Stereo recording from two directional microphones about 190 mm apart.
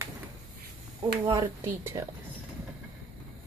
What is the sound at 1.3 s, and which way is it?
Speech, 15° right (ahead or behind).